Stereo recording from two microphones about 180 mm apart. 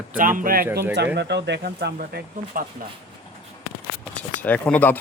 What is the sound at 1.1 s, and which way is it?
Speech, 70° right (ahead or behind).